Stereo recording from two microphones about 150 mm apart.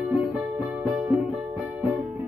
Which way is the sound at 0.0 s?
10° right (ahead or behind).